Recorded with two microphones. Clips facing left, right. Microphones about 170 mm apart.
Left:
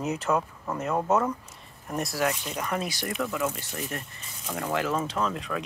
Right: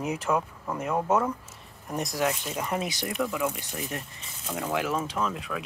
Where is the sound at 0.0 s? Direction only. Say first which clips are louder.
Left 1 dB; 10° right (ahead or behind).